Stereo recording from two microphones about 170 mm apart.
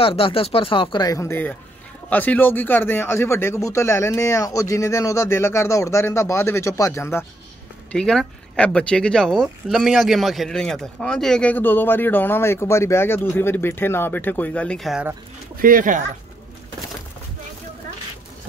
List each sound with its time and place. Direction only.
0.0 s speech: 35° left (ahead or behind); by 7.2 s 15° left (ahead or behind)
7.9 s speech: 5° left (ahead or behind)
15.6 s speech: 50° right (ahead or behind)